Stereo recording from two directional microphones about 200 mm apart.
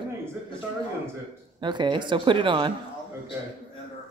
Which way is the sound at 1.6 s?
20° right (ahead or behind).